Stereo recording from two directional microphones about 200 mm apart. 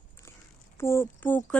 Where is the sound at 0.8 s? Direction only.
10° left (ahead or behind).